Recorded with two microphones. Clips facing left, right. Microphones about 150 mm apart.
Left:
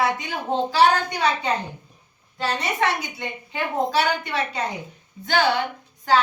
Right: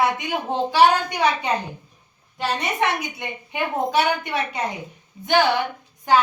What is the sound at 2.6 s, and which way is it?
A woman's voice, 20° right (ahead or behind).